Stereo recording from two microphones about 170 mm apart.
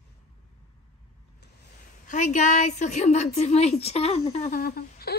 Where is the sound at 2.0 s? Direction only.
45° left (ahead or behind).